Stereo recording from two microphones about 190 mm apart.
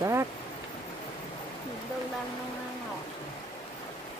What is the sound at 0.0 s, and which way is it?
Rain, 15° right (ahead or behind).